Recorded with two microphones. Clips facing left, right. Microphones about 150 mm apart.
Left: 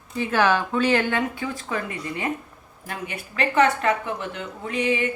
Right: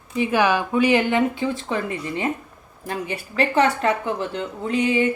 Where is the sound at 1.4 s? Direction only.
25° right (ahead or behind).